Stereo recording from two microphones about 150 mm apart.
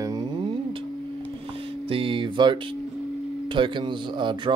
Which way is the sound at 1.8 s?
35° right (ahead or behind).